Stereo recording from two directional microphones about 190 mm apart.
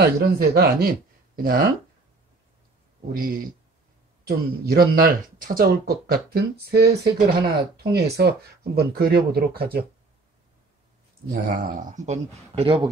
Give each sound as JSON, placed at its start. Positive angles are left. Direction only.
{"t": 0.0, "sound": "speech", "side_deg": -55}
{"t": 3.1, "sound": "speech", "side_deg": -50}
{"t": 11.2, "sound": "speech", "side_deg": -50}